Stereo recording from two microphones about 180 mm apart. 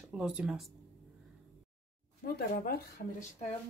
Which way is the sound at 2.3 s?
60° left (ahead or behind).